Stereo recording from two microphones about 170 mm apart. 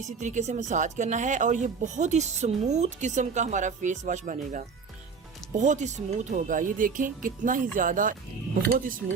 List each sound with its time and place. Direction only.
0.0 s a woman's voice: 45° right (ahead or behind)